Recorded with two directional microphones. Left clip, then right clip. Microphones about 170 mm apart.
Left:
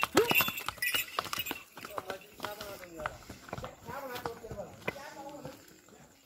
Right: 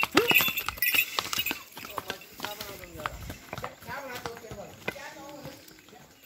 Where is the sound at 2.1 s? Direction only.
45° right (ahead or behind).